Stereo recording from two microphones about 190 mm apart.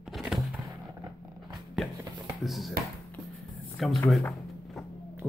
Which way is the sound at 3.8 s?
Centre (ahead or behind).